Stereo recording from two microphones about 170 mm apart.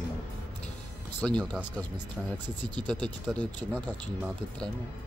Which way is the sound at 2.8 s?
10° left (ahead or behind).